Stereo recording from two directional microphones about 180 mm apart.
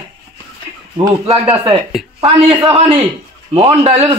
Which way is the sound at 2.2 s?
30° right (ahead or behind).